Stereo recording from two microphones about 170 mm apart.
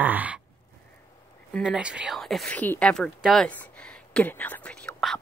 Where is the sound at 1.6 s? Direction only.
5° right (ahead or behind).